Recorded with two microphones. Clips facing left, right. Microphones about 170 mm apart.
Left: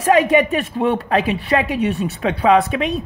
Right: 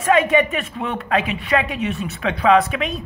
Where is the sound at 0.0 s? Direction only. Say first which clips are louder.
Left 2 dB; 35° left (ahead or behind).